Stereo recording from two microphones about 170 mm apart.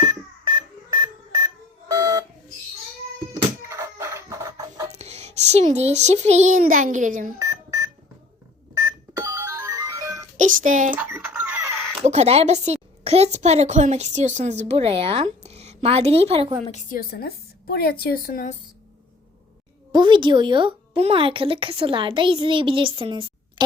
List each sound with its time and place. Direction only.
0.0 s smoke detector: 20° right (ahead or behind)
3.3 s music: 15° right (ahead or behind)
4.9 s a child's voice: 40° right (ahead or behind)
7.3 s smoke detector: 20° right (ahead or behind)
8.7 s music: 15° right (ahead or behind)
10.3 s speech: 50° right (ahead or behind)
10.9 s a sound: 10° right (ahead or behind)
12.0 s a woman's voice: 40° right (ahead or behind)
16.9 s a woman's voice: 60° left (ahead or behind)
19.9 s a woman's voice: 25° right (ahead or behind)